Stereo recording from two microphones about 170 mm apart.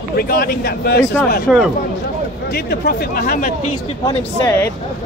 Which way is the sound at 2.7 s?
60° left (ahead or behind).